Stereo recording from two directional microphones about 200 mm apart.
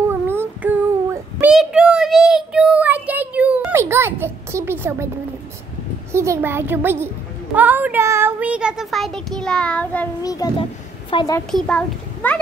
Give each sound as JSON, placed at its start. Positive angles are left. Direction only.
{"t": 0.1, "sound": "child singing", "side_deg": -10}
{"t": 6.1, "sound": "a child's voice", "side_deg": -15}
{"t": 7.5, "sound": "child singing", "side_deg": -10}
{"t": 10.2, "sound": "a child's voice", "side_deg": 20}
{"t": 11.5, "sound": "child singing", "side_deg": 5}